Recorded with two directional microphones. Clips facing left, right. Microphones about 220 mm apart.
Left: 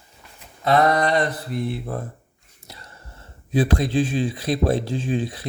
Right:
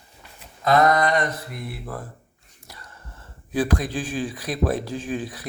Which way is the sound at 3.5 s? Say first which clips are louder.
Left 4 dB; 25° left (ahead or behind).